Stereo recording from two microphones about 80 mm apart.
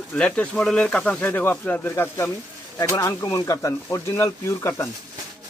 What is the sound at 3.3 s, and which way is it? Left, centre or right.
Speech, left.